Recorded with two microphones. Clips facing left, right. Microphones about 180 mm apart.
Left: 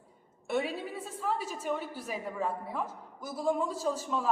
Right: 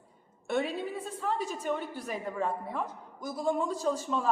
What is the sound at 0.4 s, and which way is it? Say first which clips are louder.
A woman's voice: right 1 dB; 5° left (ahead or behind).